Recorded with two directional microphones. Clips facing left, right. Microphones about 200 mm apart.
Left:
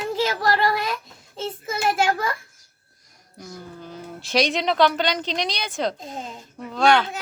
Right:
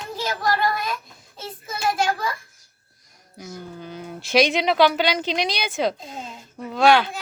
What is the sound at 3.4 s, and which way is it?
Speech, centre (ahead or behind).